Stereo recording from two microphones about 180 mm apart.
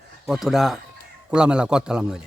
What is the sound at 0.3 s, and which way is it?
Speech, centre (ahead or behind).